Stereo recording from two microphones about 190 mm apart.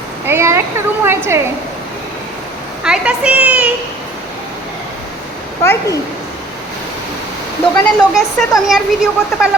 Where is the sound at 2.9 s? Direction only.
5° right (ahead or behind).